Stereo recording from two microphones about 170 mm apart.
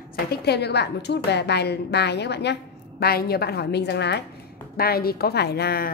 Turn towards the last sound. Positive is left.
turn(degrees=65)  # may be behind; listen again after turning